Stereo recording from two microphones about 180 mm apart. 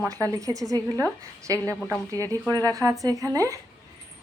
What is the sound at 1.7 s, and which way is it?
Speech, 5° left (ahead or behind).